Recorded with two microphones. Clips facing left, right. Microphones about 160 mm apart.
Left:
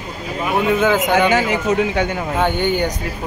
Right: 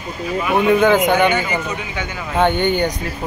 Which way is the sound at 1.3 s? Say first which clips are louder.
Left 5 dB; 90° left.